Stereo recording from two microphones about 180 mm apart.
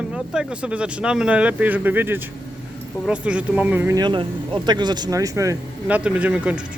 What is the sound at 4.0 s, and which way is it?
Speech, 25° right (ahead or behind).